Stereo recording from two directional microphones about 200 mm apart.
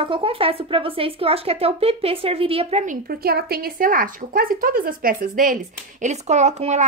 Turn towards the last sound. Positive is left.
turn(degrees=-35)  # may be behind; listen again after turning